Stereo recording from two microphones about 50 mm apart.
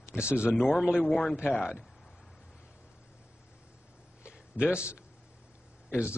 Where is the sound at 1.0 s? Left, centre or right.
Centre.